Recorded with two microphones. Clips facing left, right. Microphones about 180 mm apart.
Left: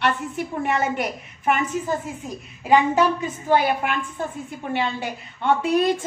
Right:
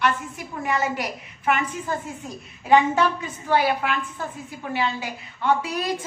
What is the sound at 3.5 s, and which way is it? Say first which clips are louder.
Speech: left 1 dB; 20° left (ahead or behind).